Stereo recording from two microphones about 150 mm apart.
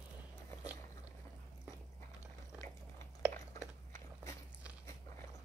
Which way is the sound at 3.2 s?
10° right (ahead or behind).